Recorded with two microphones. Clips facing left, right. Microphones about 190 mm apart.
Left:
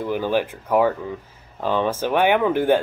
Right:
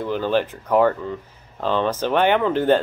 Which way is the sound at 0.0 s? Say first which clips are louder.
Right 1 dB; 10° left (ahead or behind).